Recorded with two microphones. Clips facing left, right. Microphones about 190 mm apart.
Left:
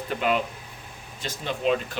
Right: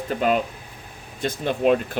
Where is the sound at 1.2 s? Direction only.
55° right (ahead or behind).